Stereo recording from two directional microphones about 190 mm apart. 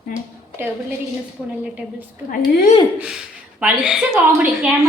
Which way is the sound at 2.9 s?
5° right (ahead or behind).